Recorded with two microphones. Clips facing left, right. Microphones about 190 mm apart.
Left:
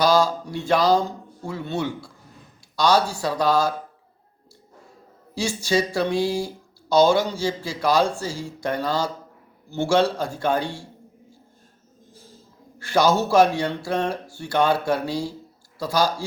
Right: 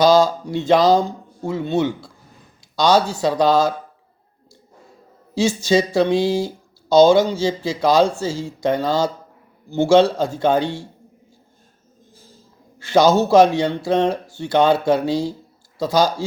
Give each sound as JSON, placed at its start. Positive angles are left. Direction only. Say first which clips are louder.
{"t": 0.0, "sound": "speech", "louder": "right 5 dB", "side_deg": -20}
{"t": 5.3, "sound": "speech", "louder": "right 6 dB", "side_deg": -20}
{"t": 12.8, "sound": "speech", "louder": "right 5 dB", "side_deg": -20}